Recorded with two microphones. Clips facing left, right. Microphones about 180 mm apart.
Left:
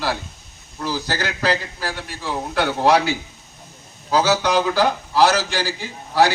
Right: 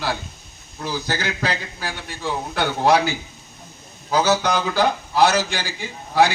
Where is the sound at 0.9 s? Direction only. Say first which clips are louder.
Right 2 dB; 35° left (ahead or behind).